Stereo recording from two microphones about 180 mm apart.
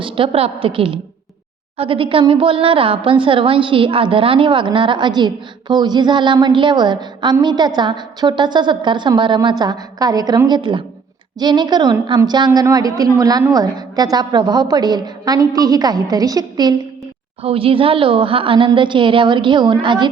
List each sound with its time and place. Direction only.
0.0 s a woman's voice: 30° right (ahead or behind)